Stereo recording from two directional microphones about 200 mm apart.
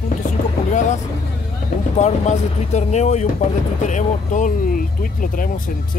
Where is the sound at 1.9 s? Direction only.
35° left (ahead or behind).